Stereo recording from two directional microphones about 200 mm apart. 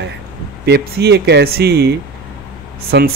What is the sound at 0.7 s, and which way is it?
Speech, 55° right (ahead or behind).